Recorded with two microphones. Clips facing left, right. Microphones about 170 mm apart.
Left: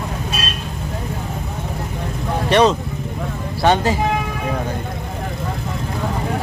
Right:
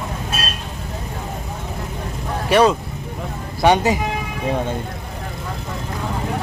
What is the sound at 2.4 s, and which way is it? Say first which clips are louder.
Speech: even; 10° right (ahead or behind).